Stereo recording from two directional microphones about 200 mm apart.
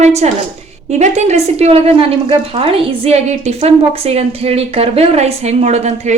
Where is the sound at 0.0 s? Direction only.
35° right (ahead or behind).